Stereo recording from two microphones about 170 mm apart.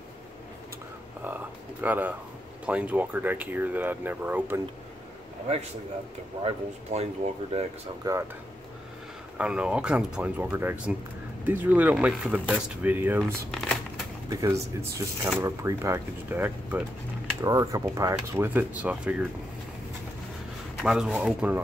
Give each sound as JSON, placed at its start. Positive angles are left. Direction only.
{"t": 1.2, "sound": "speech", "side_deg": -10}
{"t": 6.4, "sound": "speech", "side_deg": -40}
{"t": 8.0, "sound": "speech", "side_deg": -20}
{"t": 9.4, "sound": "speech", "side_deg": -5}
{"t": 13.5, "sound": "crumpling", "side_deg": 5}
{"t": 14.3, "sound": "speech", "side_deg": -15}
{"t": 20.8, "sound": "speech", "side_deg": -5}